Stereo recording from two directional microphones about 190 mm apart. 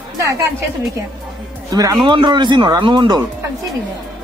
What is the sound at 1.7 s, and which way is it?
A man's voice, 20° right (ahead or behind).